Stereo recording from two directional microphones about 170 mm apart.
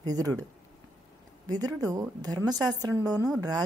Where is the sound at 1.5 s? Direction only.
20° right (ahead or behind).